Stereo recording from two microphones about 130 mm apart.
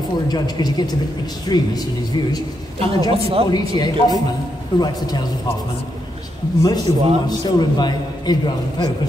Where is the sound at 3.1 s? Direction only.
45° right (ahead or behind).